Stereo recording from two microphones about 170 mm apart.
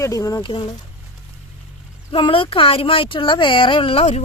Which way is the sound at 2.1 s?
30° left (ahead or behind).